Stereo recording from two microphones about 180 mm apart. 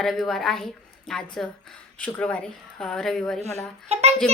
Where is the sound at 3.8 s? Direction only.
35° right (ahead or behind).